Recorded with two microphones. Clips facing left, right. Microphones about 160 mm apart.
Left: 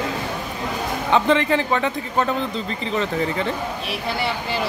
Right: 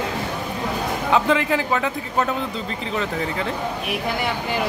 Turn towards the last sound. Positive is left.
turn(degrees=0)  # may be behind; listen again after turning